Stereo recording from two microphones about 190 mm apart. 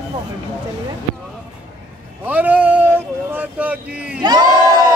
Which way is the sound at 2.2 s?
10° right (ahead or behind).